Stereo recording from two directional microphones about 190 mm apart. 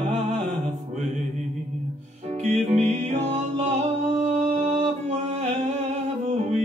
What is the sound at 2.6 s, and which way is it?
Music, 35° right (ahead or behind).